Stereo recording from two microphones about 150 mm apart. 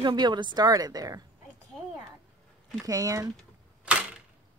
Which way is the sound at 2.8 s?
20° right (ahead or behind).